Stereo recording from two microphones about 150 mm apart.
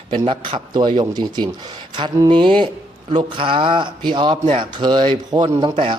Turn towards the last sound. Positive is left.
turn(degrees=-30)  # may be behind; listen again after turning